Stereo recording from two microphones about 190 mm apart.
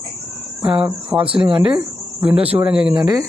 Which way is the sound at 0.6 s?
25° right (ahead or behind).